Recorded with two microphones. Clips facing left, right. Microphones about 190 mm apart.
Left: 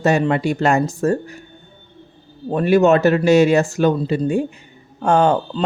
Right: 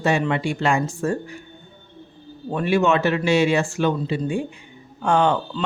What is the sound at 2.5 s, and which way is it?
Speech, 40° left (ahead or behind).